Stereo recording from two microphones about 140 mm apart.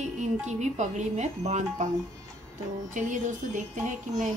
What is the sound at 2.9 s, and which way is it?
A woman's voice, 65° right (ahead or behind).